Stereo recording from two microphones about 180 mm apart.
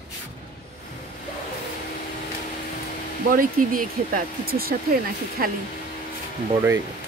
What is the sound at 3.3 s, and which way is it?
Speech, 50° right (ahead or behind).